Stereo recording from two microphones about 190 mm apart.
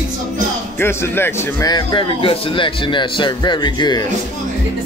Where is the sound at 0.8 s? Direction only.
10° left (ahead or behind).